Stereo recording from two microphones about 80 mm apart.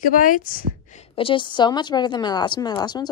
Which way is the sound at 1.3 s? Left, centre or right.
Left.